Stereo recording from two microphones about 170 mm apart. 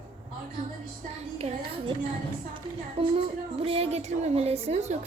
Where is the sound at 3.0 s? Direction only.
35° right (ahead or behind).